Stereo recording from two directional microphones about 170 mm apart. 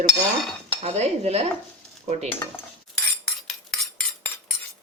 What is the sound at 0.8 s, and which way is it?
A woman's voice, 40° right (ahead or behind).